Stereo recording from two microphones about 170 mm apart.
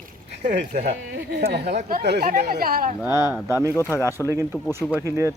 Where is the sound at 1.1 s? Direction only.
75° right (ahead or behind).